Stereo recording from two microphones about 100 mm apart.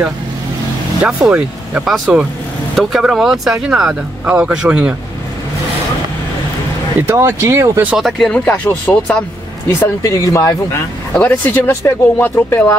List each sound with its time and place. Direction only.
1.0 s speech: 10° right (ahead or behind)
2.7 s speech: centre (ahead or behind)
7.0 s speech: 25° right (ahead or behind)
8.0 s speech: centre (ahead or behind)
8.5 s speech: 15° left (ahead or behind)
9.8 s speech: 30° left (ahead or behind)
11.1 s speech: 20° left (ahead or behind)